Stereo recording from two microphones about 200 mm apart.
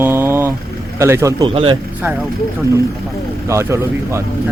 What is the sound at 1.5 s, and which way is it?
Speech, 25° right (ahead or behind).